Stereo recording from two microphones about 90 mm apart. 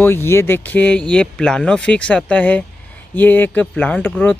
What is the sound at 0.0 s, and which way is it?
Speech, 25° left (ahead or behind).